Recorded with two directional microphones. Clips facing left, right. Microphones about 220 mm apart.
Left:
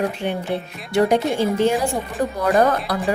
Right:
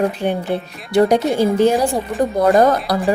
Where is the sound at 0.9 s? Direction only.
40° right (ahead or behind).